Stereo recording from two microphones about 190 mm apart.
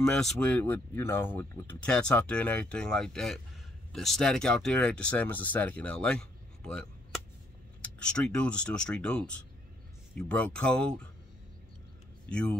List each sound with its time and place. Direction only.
0.0 s speech: 5° left (ahead or behind)
12.3 s speech: 5° left (ahead or behind)